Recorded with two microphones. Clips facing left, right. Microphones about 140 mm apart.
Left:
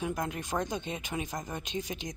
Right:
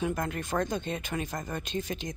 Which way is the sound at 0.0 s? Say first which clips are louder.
Right 3 dB; 10° left (ahead or behind).